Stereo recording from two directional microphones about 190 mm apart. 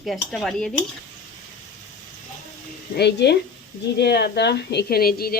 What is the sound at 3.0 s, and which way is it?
Speech, 60° left (ahead or behind).